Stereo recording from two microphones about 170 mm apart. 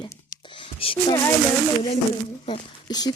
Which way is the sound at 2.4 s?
25° left (ahead or behind).